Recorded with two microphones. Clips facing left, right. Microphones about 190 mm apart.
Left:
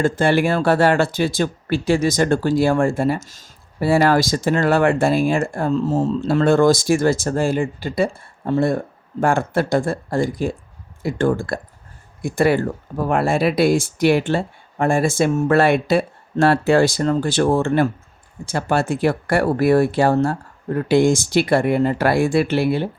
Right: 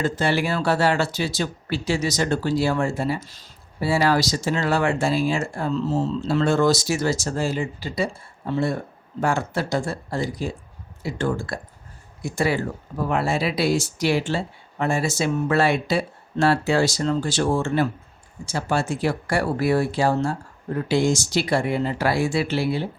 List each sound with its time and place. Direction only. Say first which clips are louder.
0.0 s speech: left 6 dB; 50° left (ahead or behind)